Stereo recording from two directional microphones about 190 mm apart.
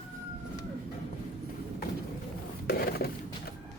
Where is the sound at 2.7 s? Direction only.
55° left (ahead or behind).